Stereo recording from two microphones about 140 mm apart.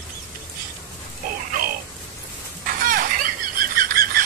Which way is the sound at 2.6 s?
90° right.